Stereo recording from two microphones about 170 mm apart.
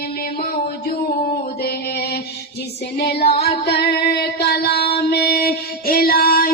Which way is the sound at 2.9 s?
70° left (ahead or behind).